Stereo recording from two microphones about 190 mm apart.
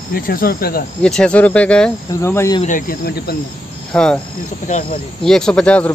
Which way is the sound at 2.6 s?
45° left (ahead or behind).